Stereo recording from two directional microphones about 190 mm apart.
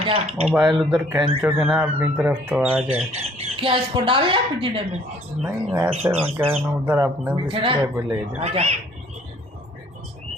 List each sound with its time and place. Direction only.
0.0 s speech: 30° right (ahead or behind)
0.5 s speech: 5° right (ahead or behind)
3.1 s speech: 30° right (ahead or behind)
5.4 s speech: 5° right (ahead or behind)
5.9 s speech: 30° right (ahead or behind)
6.8 s speech: 10° right (ahead or behind)
7.4 s speech: 25° right (ahead or behind)
7.9 s speech: 10° right (ahead or behind)
8.4 s speech: 35° right (ahead or behind)